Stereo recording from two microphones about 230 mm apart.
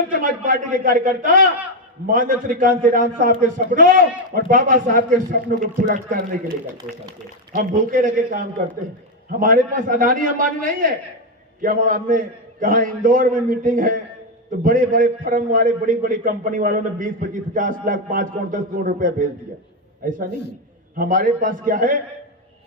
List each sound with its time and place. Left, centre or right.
0.1 s a man's voice: right
7.5 s a man's voice: right
9.4 s a man's voice: right
20.3 s a man's voice: left
20.9 s a man's voice: right